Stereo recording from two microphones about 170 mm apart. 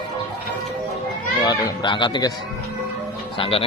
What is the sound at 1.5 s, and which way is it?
Speech, 25° left (ahead or behind).